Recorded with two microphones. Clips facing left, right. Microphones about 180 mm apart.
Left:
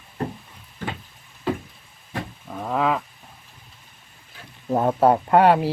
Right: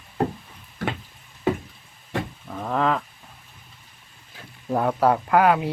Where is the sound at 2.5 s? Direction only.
5° left (ahead or behind).